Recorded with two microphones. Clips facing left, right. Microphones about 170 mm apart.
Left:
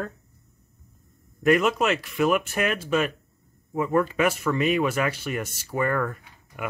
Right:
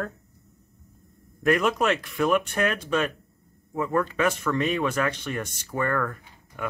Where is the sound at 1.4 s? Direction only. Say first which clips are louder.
Left 2 dB; 5° left (ahead or behind).